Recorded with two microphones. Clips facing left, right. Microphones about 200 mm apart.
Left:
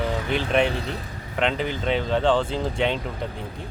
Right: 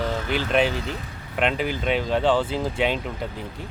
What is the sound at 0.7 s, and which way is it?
Speech, 35° left (ahead or behind).